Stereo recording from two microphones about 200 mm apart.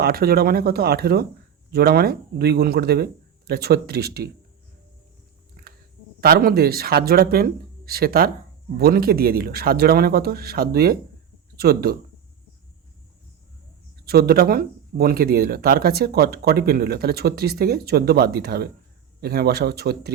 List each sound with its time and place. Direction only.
0.0 s speech: 50° right (ahead or behind)
5.6 s a sound: 50° right (ahead or behind)
6.1 s speech: 50° right (ahead or behind)
14.0 s speech: 50° right (ahead or behind)